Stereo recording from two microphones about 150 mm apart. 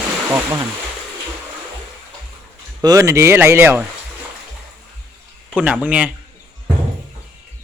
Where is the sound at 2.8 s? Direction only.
20° right (ahead or behind).